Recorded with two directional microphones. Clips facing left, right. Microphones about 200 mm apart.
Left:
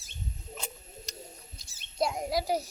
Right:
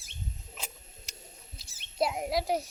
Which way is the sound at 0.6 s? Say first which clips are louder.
Left 4 dB; 5° right (ahead or behind).